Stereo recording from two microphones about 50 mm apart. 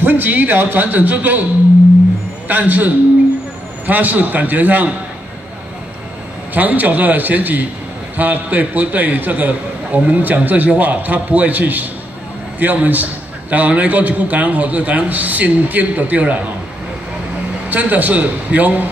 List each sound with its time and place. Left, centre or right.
0.0 s a man's voice: right
2.4 s a man's voice: right
6.5 s a man's voice: right
17.6 s a man's voice: right